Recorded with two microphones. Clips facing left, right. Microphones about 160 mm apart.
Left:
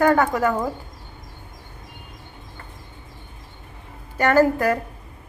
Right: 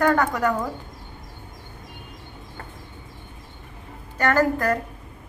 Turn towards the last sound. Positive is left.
turn(degrees=10)  # may be behind; listen again after turning